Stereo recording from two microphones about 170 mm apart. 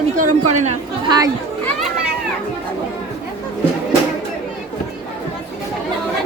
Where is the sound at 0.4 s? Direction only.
40° right (ahead or behind).